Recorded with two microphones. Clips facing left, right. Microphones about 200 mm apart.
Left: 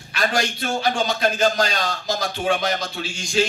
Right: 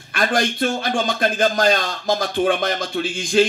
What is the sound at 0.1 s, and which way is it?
A man's voice, 50° right (ahead or behind).